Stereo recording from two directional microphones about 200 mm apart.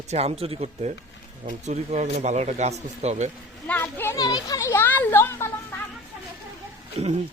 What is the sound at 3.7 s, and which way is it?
Speech, 10° left (ahead or behind).